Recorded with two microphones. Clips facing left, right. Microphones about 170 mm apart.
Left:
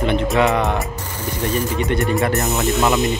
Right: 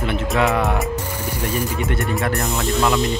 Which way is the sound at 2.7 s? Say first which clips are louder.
Even; 20° left (ahead or behind).